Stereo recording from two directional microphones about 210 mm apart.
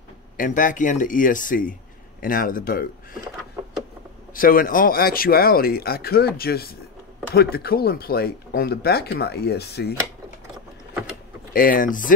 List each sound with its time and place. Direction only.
0.4 s speech: 40° left (ahead or behind)
4.3 s speech: 40° left (ahead or behind)
11.5 s speech: 40° left (ahead or behind)